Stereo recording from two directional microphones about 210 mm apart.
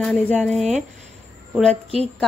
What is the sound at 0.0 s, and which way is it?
Speech, 5° left (ahead or behind).